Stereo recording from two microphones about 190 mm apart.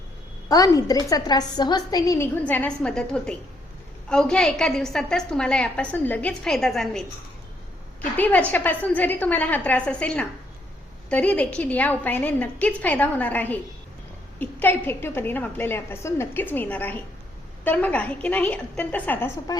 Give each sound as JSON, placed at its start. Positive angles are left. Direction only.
{"t": 0.4, "sound": "a woman's voice", "side_deg": 20}
{"t": 8.1, "sound": "a woman's voice", "side_deg": 10}